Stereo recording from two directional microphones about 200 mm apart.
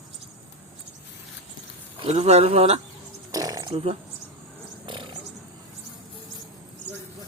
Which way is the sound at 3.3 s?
20° right (ahead or behind).